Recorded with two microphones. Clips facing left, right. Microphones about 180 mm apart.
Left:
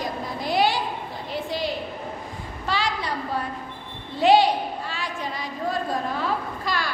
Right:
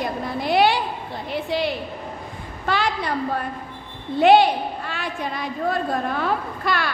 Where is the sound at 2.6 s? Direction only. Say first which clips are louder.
Right 3 dB; 55° right (ahead or behind).